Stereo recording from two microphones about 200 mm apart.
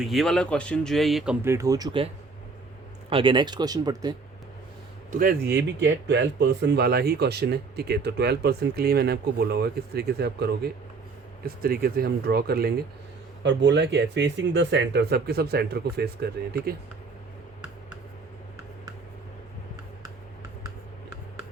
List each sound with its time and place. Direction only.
0.0 s speech: centre (ahead or behind)
1.5 s speech: 15° right (ahead or behind)
3.1 s speech: 25° right (ahead or behind)
5.1 s speech: 45° right (ahead or behind)
13.4 s speech: 65° right (ahead or behind)